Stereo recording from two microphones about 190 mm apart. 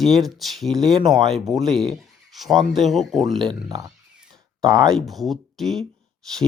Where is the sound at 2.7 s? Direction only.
Centre (ahead or behind).